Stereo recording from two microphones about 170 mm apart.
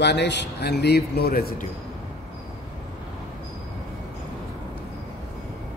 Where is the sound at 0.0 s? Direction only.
90° left; by 1.7 s 65° left (ahead or behind).